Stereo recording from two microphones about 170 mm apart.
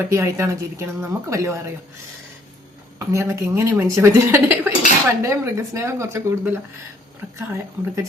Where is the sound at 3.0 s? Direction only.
15° right (ahead or behind).